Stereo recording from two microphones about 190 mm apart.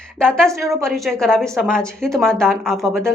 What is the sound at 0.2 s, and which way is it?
A woman's voice, 5° left (ahead or behind).